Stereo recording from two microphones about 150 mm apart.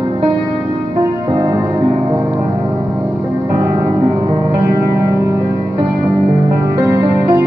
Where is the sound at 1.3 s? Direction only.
25° right (ahead or behind).